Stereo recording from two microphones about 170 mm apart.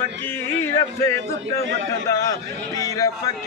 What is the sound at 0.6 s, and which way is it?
Speech, 15° left (ahead or behind).